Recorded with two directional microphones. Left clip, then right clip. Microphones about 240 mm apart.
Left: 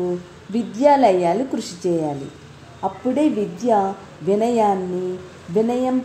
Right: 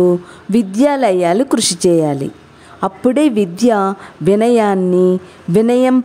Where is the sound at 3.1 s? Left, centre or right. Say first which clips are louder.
Right 6 dB; right.